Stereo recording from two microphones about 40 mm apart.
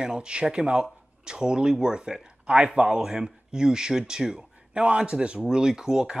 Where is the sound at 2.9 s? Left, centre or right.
Centre.